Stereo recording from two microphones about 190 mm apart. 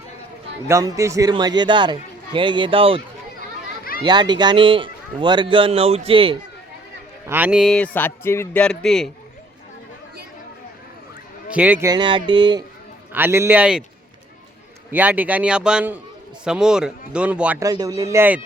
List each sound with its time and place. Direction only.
0.7 s a man's voice: 20° right (ahead or behind)
4.0 s a man's voice: 20° right (ahead or behind)
7.3 s a man's voice: 10° right (ahead or behind)
11.5 s a man's voice: 10° right (ahead or behind)
11.9 s a man's voice: 25° right (ahead or behind)
13.1 s a man's voice: 10° right (ahead or behind)
14.8 s a man's voice: 10° right (ahead or behind)
17.6 s a man's voice: 20° right (ahead or behind)